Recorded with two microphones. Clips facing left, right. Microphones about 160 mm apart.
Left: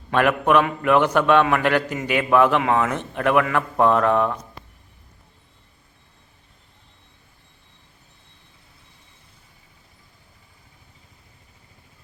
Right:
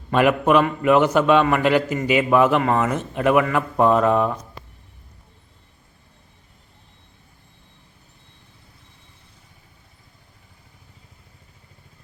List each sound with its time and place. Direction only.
0.1 s a man's voice: 5° right (ahead or behind)